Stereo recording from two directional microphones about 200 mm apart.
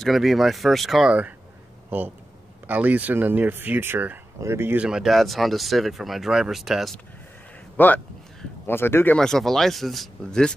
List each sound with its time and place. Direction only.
0.0 s a man's voice: centre (ahead or behind)